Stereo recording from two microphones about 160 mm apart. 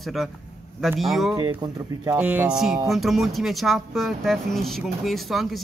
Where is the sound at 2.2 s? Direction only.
10° right (ahead or behind).